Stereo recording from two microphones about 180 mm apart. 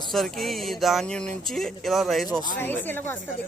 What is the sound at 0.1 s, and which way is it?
Speech, centre (ahead or behind).